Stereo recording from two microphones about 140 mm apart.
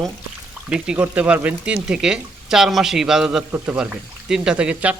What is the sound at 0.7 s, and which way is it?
Speech, 5° right (ahead or behind).